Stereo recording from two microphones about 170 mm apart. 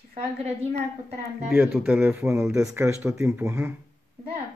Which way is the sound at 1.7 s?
10° right (ahead or behind).